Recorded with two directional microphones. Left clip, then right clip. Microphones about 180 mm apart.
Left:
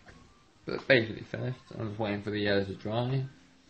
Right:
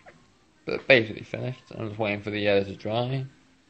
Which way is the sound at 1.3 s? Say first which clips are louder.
Right 6 dB; 20° right (ahead or behind).